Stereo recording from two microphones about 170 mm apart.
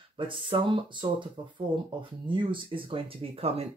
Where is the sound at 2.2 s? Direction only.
30° right (ahead or behind).